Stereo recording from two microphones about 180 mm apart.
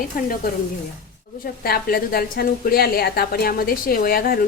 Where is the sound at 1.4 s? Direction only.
55° left (ahead or behind).